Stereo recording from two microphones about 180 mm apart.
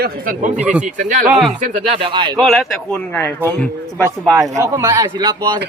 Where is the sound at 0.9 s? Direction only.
45° right (ahead or behind).